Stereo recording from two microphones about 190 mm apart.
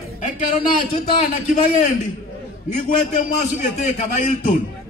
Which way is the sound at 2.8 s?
40° left (ahead or behind).